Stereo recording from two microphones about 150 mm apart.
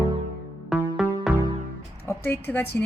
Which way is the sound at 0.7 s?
5° right (ahead or behind).